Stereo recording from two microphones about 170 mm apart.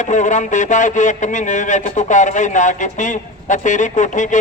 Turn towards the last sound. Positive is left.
turn(degrees=50)  # may be behind; listen again after turning